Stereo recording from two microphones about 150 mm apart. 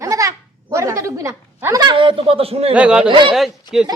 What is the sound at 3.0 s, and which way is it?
Speech, 30° right (ahead or behind).